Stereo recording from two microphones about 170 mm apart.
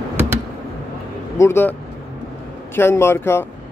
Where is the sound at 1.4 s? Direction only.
15° left (ahead or behind).